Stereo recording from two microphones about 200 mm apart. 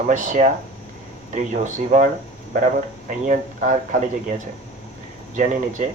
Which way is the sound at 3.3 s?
40° right (ahead or behind).